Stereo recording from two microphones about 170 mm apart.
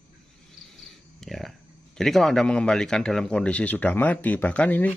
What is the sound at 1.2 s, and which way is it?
A man's voice, centre (ahead or behind).